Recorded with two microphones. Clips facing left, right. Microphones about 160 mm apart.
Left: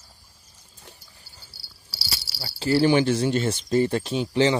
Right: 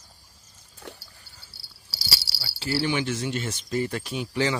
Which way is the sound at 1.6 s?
25° right (ahead or behind).